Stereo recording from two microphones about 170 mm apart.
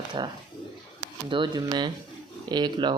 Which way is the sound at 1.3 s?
25° right (ahead or behind).